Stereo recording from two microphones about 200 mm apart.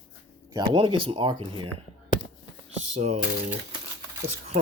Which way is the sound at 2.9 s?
35° right (ahead or behind).